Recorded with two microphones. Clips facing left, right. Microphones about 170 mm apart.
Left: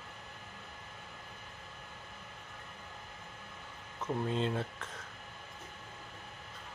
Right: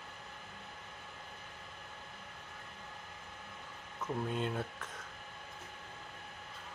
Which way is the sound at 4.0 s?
25° left (ahead or behind).